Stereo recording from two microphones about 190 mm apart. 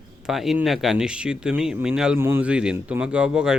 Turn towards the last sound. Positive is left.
turn(degrees=-5)  # may be behind; listen again after turning